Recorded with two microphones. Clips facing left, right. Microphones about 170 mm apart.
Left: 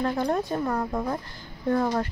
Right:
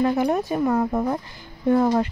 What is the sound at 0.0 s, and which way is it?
A woman's voice, 15° right (ahead or behind).